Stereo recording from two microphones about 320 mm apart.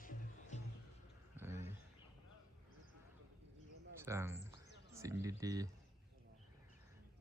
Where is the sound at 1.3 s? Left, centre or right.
Centre.